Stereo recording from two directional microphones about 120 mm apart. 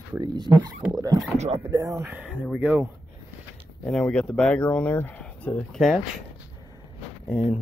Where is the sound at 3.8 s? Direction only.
5° left (ahead or behind).